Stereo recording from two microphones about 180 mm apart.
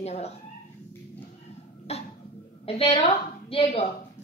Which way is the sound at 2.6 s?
35° left (ahead or behind).